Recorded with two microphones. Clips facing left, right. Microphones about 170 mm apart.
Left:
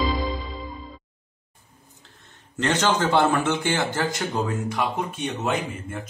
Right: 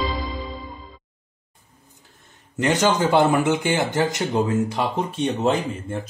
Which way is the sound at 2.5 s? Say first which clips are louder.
Right 3 dB; 15° right (ahead or behind).